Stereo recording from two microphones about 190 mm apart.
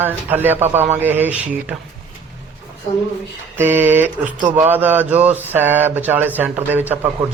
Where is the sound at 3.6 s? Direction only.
10° right (ahead or behind).